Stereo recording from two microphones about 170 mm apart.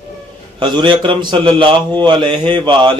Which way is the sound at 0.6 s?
25° right (ahead or behind).